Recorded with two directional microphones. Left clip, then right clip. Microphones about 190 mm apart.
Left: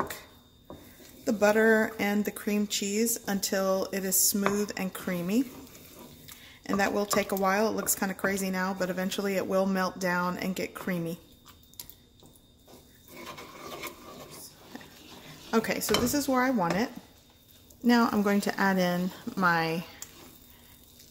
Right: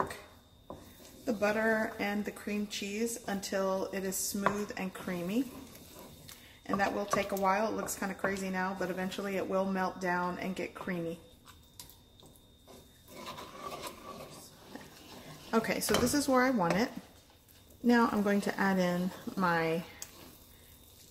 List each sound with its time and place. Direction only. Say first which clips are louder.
1.2 s speech: left 7 dB; 55° left (ahead or behind)
6.6 s speech: left 4 dB; 55° left (ahead or behind)
15.5 s speech: left 3 dB; 20° left (ahead or behind)